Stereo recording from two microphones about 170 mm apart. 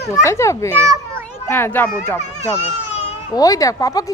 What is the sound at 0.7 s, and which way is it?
Speech, 15° right (ahead or behind).